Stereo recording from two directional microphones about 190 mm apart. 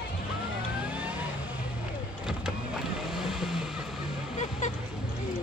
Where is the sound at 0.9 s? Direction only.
5° right (ahead or behind).